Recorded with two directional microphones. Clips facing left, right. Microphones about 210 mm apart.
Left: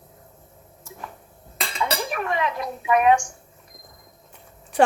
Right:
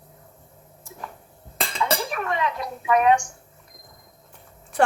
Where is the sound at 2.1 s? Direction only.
15° left (ahead or behind).